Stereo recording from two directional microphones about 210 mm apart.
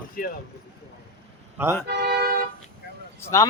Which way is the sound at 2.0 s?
50° right (ahead or behind).